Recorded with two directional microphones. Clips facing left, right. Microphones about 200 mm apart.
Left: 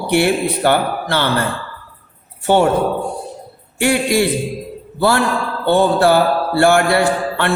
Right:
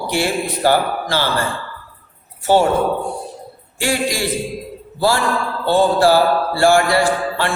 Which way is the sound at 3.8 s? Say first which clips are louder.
Left 5 dB; 60° left (ahead or behind).